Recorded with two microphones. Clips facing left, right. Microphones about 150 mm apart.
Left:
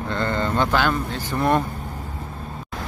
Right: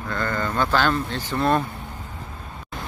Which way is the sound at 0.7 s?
10° left (ahead or behind).